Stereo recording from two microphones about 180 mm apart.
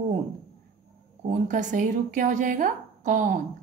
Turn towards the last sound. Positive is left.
turn(degrees=-45)  # may be behind; listen again after turning